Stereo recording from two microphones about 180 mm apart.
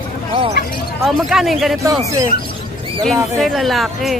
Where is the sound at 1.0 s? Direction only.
Centre (ahead or behind).